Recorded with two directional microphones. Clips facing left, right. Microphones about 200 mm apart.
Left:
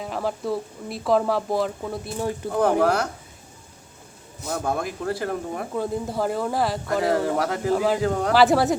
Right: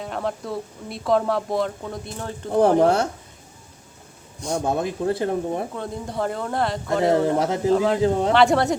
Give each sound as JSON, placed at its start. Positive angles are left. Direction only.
{"t": 0.0, "sound": "speech", "side_deg": 0}
{"t": 2.5, "sound": "speech", "side_deg": -30}
{"t": 4.5, "sound": "speech", "side_deg": -25}
{"t": 5.7, "sound": "speech", "side_deg": 5}
{"t": 7.3, "sound": "speech", "side_deg": -20}
{"t": 7.7, "sound": "speech", "side_deg": 5}